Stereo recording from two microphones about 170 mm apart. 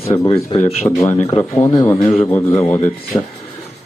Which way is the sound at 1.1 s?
35° left (ahead or behind).